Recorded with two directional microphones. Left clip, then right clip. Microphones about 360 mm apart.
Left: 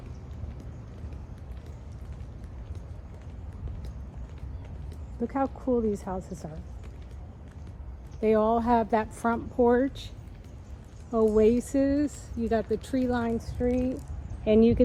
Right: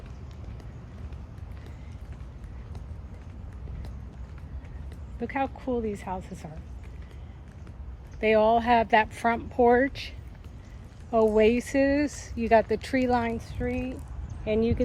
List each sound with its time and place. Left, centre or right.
5.2 s speech: centre
8.2 s speech: centre
11.1 s speech: centre
11.3 s speech: centre
13.6 s speech: centre